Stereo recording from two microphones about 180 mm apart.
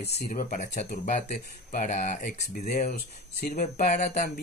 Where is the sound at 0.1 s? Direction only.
45° left (ahead or behind).